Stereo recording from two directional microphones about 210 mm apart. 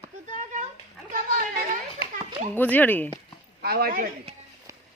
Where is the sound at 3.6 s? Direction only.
45° right (ahead or behind).